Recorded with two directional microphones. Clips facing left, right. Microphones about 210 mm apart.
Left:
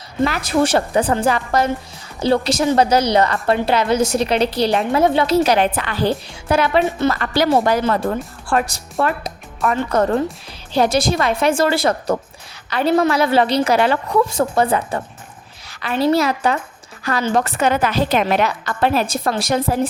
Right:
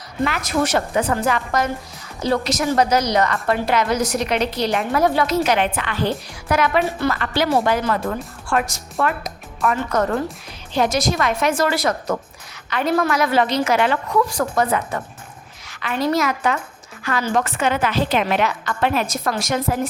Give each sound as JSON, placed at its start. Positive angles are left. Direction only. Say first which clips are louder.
{"t": 0.3, "sound": "a woman's voice", "louder": "left 3 dB", "side_deg": 30}